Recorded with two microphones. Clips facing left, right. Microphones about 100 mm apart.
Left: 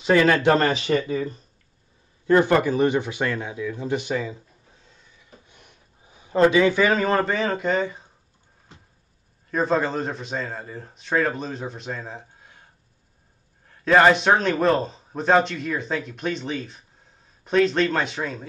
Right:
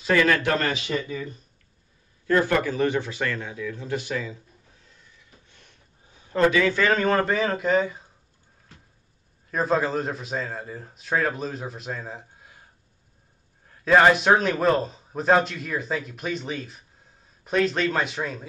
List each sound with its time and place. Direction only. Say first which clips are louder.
0.0 s speech: left 3 dB; 25° left (ahead or behind)
2.2 s speech: left 4 dB; 25° left (ahead or behind)
4.8 s a sound: left 1 dB; 20° left (ahead or behind)
6.9 s a man's voice: even; centre (ahead or behind)
8.7 s vehicle: left 2 dB; 20° left (ahead or behind)
9.5 s a man's voice: left 1 dB; centre (ahead or behind)
13.7 s a man's voice: left 1 dB; centre (ahead or behind)